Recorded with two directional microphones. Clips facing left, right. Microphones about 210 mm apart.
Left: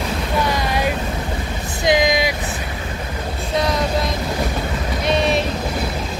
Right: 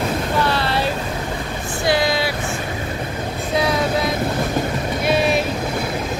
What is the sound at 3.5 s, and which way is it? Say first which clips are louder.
Vehicle: right 1 dB; centre (ahead or behind).